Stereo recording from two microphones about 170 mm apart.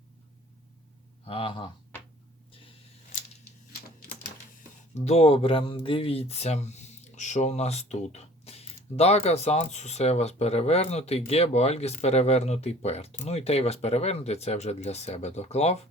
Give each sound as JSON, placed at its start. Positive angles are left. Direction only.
{"t": 1.2, "sound": "speech", "side_deg": 35}
{"t": 4.9, "sound": "speech", "side_deg": 40}